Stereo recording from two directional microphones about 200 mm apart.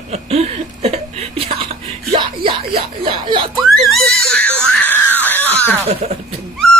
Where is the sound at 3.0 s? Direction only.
25° right (ahead or behind).